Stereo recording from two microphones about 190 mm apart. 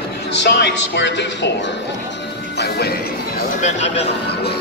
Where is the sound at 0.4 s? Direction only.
65° left (ahead or behind).